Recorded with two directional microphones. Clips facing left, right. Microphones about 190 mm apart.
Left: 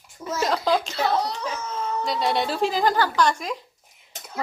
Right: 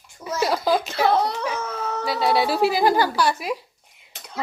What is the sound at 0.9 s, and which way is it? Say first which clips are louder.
Whimper: right 4 dB; 55° right (ahead or behind).